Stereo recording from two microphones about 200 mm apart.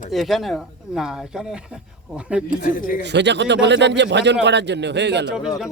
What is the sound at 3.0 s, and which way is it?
Speech, 60° right (ahead or behind).